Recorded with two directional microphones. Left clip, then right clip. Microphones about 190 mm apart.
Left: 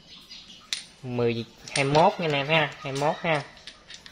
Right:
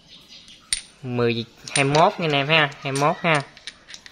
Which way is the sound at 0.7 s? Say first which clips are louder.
Right 4 dB; 25° right (ahead or behind).